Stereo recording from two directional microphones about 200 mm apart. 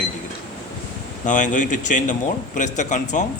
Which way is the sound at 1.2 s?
40° left (ahead or behind).